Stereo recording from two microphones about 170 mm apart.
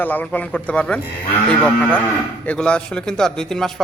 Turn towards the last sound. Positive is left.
turn(degrees=0)  # may be behind; listen again after turning